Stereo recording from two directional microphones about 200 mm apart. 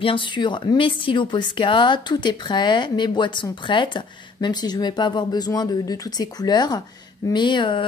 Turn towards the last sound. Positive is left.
turn(degrees=25)  # may be behind; listen again after turning